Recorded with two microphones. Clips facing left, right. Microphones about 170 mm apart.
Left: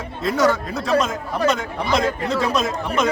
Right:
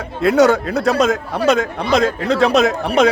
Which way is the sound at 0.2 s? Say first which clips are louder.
Right 6 dB; 70° right (ahead or behind).